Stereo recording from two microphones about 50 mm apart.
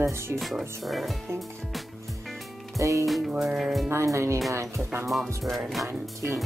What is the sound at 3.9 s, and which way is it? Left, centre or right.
Speech, right.